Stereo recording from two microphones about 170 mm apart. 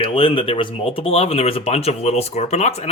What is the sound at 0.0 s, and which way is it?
Speech, 35° left (ahead or behind).